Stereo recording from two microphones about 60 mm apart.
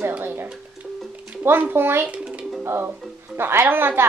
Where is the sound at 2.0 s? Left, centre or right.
Right.